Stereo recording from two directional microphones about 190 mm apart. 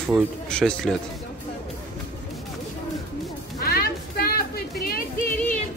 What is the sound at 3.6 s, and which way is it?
Music, 50° left (ahead or behind).